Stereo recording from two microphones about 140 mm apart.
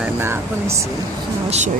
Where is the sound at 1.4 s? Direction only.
50° right (ahead or behind).